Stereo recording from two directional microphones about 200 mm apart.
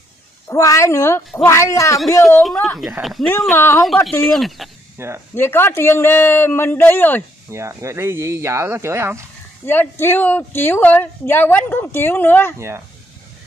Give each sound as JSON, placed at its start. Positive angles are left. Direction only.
{"t": 0.5, "sound": "speech", "side_deg": 15}
{"t": 2.0, "sound": "speech", "side_deg": 0}
{"t": 3.5, "sound": "speech", "side_deg": 10}
{"t": 3.8, "sound": "speech", "side_deg": 0}
{"t": 4.9, "sound": "speech", "side_deg": -10}
{"t": 5.3, "sound": "speech", "side_deg": 10}
{"t": 7.5, "sound": "speech", "side_deg": -15}
{"t": 9.7, "sound": "speech", "side_deg": 10}
{"t": 12.5, "sound": "speech", "side_deg": -15}